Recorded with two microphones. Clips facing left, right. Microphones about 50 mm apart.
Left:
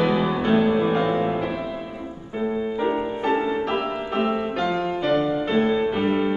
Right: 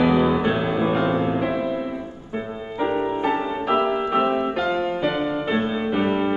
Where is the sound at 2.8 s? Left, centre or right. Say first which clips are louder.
Right 6 dB; centre.